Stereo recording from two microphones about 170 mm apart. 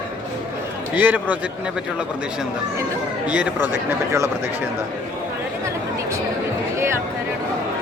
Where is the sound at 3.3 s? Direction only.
10° right (ahead or behind).